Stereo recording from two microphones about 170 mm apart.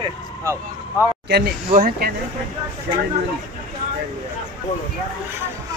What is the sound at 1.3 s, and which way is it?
Speech, 60° right (ahead or behind).